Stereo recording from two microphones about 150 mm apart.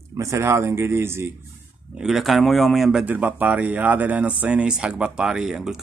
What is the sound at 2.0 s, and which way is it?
Speech, centre (ahead or behind).